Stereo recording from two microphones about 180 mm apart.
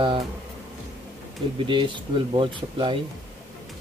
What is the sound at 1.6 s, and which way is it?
Speech, 25° right (ahead or behind).